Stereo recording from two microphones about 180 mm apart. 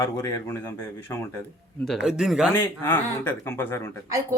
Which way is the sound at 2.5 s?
10° left (ahead or behind).